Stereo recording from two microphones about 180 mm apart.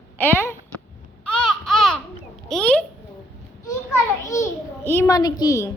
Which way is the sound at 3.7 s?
15° left (ahead or behind).